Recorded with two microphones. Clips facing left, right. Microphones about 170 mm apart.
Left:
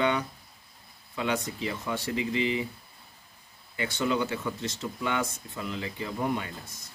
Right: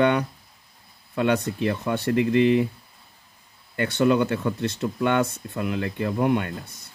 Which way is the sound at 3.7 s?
60° right (ahead or behind).